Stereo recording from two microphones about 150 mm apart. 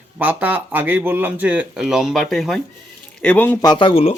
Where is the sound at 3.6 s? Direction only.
30° left (ahead or behind).